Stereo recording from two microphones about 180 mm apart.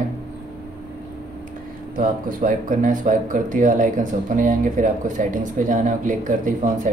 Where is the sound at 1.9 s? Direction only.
45° right (ahead or behind).